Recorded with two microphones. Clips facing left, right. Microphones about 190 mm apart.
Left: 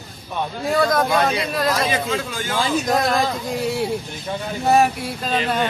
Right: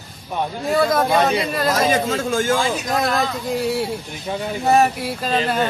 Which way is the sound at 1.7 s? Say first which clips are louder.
Right 3 dB; 45° right (ahead or behind).